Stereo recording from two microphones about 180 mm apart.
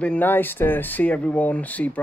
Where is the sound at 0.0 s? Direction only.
10° left (ahead or behind).